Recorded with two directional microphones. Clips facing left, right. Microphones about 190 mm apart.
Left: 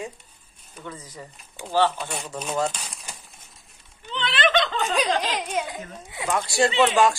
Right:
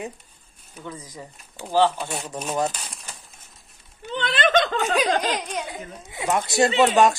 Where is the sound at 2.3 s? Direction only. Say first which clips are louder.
Even; 15° right (ahead or behind).